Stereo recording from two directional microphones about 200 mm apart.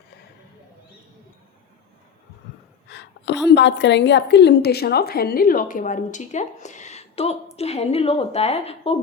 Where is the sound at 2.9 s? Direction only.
60° left (ahead or behind).